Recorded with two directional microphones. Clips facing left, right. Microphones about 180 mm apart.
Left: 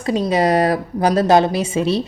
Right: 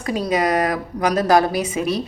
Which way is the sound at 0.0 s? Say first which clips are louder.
Left 3 dB; 25° left (ahead or behind).